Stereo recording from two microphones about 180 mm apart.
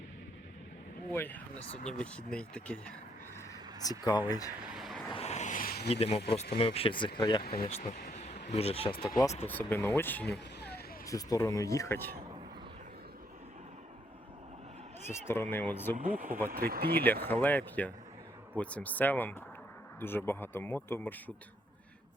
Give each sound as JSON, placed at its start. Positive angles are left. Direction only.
{"t": 1.1, "sound": "speech", "side_deg": 10}
{"t": 3.8, "sound": "speech", "side_deg": 20}
{"t": 4.7, "sound": "vehicle", "side_deg": 0}
{"t": 5.1, "sound": "a sound", "side_deg": 35}
{"t": 5.9, "sound": "a man's voice", "side_deg": 35}
{"t": 7.6, "sound": "a sound", "side_deg": 35}
{"t": 8.4, "sound": "a man's voice", "side_deg": 35}
{"t": 9.5, "sound": "speech", "side_deg": 10}
{"t": 10.2, "sound": "a sound", "side_deg": 70}
{"t": 11.0, "sound": "speech", "side_deg": 20}
{"t": 15.1, "sound": "speech", "side_deg": 15}
{"t": 16.0, "sound": "speech", "side_deg": -50}
{"t": 17.2, "sound": "speech", "side_deg": 10}